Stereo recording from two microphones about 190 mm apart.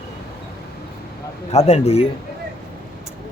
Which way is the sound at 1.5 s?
35° left (ahead or behind).